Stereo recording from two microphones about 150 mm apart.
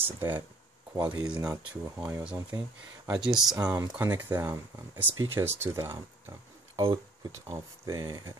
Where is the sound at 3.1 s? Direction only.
5° right (ahead or behind).